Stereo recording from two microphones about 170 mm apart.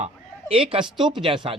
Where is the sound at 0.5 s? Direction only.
30° right (ahead or behind).